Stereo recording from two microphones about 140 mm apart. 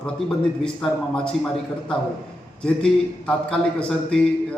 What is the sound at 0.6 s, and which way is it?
A man's voice, 5° left (ahead or behind).